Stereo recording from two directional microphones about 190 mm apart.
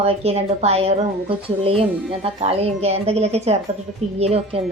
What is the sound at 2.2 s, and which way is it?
A woman's voice, 30° right (ahead or behind).